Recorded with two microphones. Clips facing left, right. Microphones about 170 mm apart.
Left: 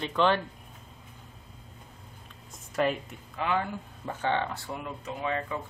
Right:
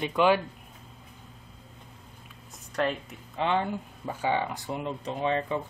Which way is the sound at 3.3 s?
25° right (ahead or behind).